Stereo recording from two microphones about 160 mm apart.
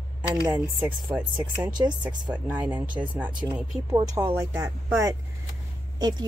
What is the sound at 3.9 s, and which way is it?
A woman's voice, 25° right (ahead or behind).